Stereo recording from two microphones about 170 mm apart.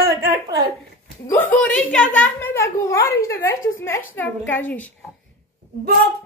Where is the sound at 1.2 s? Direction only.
10° left (ahead or behind).